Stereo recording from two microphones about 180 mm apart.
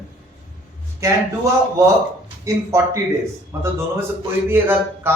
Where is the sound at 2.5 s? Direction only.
20° right (ahead or behind).